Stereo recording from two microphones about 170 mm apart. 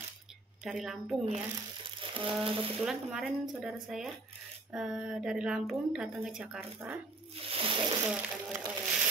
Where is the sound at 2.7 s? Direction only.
Centre (ahead or behind).